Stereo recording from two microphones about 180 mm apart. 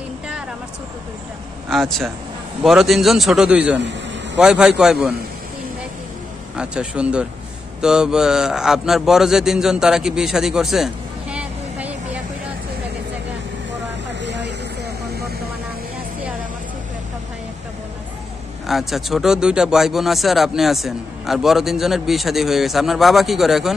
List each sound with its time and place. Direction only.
1.7 s speech: centre (ahead or behind)
6.5 s speech: 5° right (ahead or behind)
14.2 s vehicle: 75° right (ahead or behind)
18.7 s speech: centre (ahead or behind)